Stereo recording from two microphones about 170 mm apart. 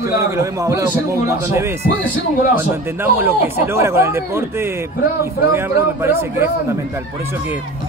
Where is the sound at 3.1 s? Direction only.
15° right (ahead or behind).